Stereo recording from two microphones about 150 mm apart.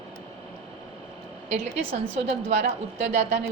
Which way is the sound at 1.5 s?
45° right (ahead or behind).